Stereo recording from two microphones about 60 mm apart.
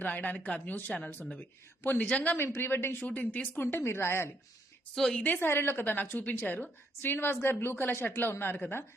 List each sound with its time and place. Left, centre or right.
0.0 s speech: left
0.9 s speech: centre
1.4 s a woman's voice: left
2.0 s speech: centre
2.4 s a woman's voice: left
3.6 s a woman's voice: left
5.2 s a woman's voice: left